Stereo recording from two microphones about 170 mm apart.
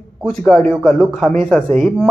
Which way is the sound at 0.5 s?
5° left (ahead or behind).